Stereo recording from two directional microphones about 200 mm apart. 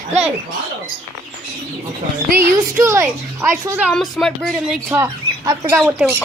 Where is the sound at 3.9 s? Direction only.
5° left (ahead or behind).